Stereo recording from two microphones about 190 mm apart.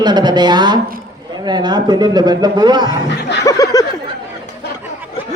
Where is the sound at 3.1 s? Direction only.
65° left (ahead or behind).